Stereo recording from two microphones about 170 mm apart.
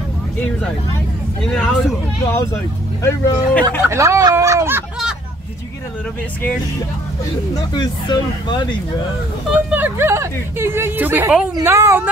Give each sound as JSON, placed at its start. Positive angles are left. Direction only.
{"t": 1.5, "sound": "speech", "side_deg": 5}
{"t": 3.0, "sound": "speech", "side_deg": 15}
{"t": 3.8, "sound": "speech", "side_deg": -15}
{"t": 7.5, "sound": "speech", "side_deg": 25}
{"t": 9.7, "sound": "a woman's voice", "side_deg": -10}